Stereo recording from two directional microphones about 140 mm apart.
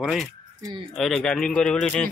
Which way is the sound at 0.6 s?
25° right (ahead or behind).